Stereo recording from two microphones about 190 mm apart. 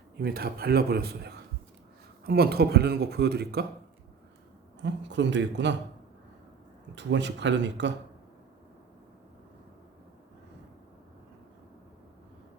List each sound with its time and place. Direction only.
0.2 s speech: 55° right (ahead or behind)
4.8 s speech: 70° right (ahead or behind)
6.9 s speech: 70° right (ahead or behind)